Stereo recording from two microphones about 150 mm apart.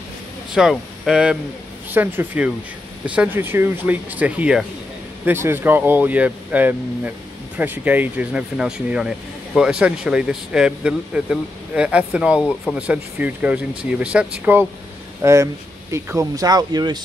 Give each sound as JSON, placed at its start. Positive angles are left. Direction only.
{"t": 0.6, "sound": "speech", "side_deg": 0}